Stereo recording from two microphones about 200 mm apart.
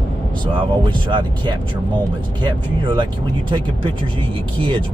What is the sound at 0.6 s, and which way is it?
Speech, 25° right (ahead or behind).